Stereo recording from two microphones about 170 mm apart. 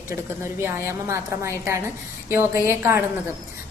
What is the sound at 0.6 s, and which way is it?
A woman's voice, 15° right (ahead or behind).